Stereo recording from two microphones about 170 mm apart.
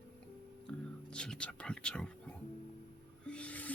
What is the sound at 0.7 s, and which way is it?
Music, 5° left (ahead or behind).